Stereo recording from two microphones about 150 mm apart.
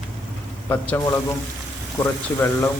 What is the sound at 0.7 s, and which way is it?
A man's voice, 15° left (ahead or behind).